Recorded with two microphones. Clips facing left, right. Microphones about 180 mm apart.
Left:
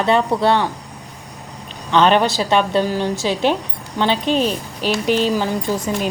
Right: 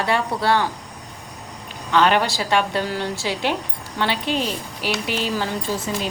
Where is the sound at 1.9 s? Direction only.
20° left (ahead or behind).